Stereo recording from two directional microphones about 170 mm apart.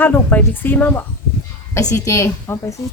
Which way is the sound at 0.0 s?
10° left (ahead or behind).